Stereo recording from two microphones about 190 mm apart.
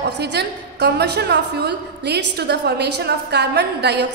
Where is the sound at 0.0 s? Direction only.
60° right (ahead or behind).